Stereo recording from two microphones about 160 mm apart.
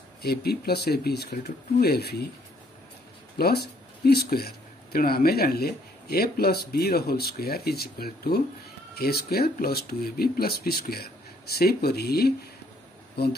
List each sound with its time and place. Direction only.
0.2 s speech: 80° left
3.3 s speech: 80° left